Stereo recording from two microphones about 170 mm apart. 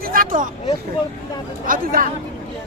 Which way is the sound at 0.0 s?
55° right (ahead or behind).